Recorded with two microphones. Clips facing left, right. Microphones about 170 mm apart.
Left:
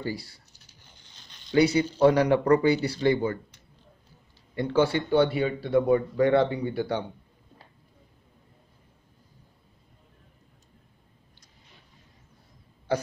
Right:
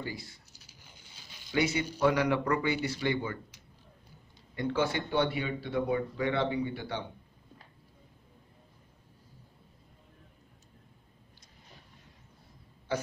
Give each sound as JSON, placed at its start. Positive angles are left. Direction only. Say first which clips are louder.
{"t": 0.0, "sound": "speech", "louder": "left 6 dB", "side_deg": 35}
{"t": 0.5, "sound": "a sound", "louder": "right 1 dB", "side_deg": -10}
{"t": 1.5, "sound": "speech", "louder": "left 8 dB", "side_deg": 35}
{"t": 4.6, "sound": "speech", "louder": "left 6 dB", "side_deg": 30}